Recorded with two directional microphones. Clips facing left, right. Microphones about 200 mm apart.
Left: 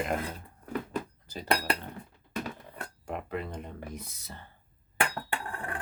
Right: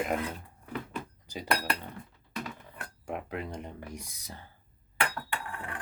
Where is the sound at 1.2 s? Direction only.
15° right (ahead or behind).